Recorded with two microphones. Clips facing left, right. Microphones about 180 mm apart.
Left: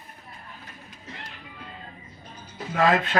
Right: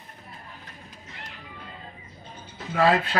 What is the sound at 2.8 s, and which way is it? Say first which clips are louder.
Speech: even; 35° right (ahead or behind).